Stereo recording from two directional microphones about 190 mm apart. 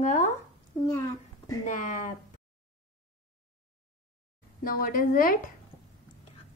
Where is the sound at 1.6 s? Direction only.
40° left (ahead or behind).